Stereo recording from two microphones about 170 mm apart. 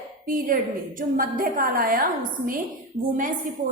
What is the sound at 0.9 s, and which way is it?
A woman's voice, 55° right (ahead or behind).